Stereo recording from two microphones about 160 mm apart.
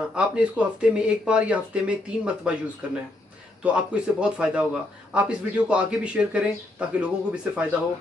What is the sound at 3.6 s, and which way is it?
Speech, 5° right (ahead or behind).